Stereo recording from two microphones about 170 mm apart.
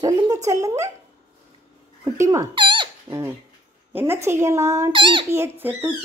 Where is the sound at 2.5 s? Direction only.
30° right (ahead or behind).